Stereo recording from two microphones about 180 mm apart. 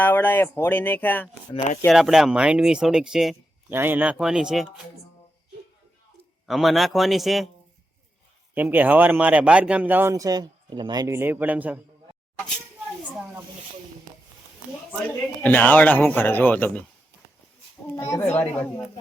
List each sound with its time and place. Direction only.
0.0 s speech: 10° left (ahead or behind)
1.9 s speech: centre (ahead or behind)
6.4 s speech: centre (ahead or behind)
8.5 s a man's voice: 10° right (ahead or behind)
15.4 s speech: 10° left (ahead or behind)
17.9 s speech: 15° left (ahead or behind)